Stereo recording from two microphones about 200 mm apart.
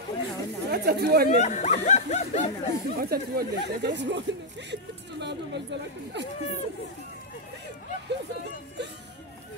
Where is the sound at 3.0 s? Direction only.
50° right (ahead or behind).